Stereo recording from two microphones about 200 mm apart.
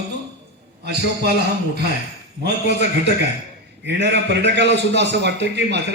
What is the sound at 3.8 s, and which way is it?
A man's voice, 60° right (ahead or behind).